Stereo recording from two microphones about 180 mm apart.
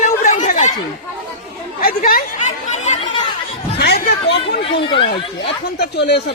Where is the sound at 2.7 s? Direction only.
40° left (ahead or behind).